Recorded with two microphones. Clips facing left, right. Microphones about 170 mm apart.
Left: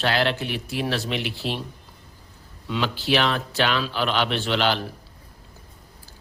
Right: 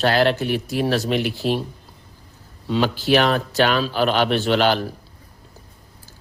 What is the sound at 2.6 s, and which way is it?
A man's voice, 40° right (ahead or behind).